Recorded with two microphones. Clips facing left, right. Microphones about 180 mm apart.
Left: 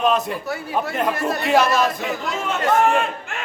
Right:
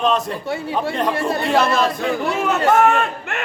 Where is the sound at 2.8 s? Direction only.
70° right (ahead or behind).